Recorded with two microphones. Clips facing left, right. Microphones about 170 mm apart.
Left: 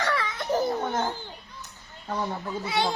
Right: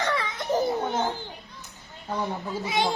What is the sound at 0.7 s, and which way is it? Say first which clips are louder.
Children playing: right 1 dB; 15° right (ahead or behind).